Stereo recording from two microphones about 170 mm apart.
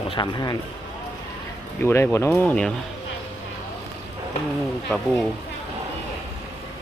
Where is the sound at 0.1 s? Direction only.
25° left (ahead or behind).